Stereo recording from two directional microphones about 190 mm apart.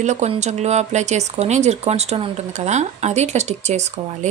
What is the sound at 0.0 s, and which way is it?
Speech, 40° right (ahead or behind).